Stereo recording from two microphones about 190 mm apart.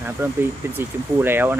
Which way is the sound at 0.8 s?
10° right (ahead or behind).